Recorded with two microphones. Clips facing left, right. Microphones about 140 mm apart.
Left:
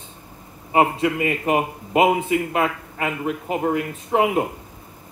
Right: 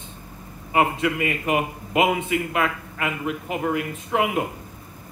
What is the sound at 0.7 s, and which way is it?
A man's voice, 30° left (ahead or behind).